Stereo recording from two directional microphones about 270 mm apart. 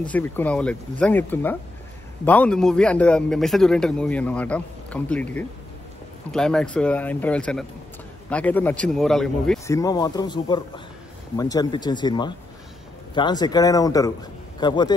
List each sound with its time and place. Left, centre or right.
0.0 s a man's voice: centre
9.8 s speech: centre